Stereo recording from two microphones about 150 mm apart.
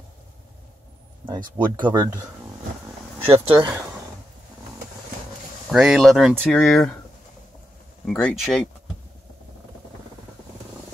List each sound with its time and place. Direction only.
1.2 s speech: 30° right (ahead or behind)
3.3 s speech: 40° right (ahead or behind)
5.7 s speech: 5° right (ahead or behind)
8.1 s speech: 5° left (ahead or behind)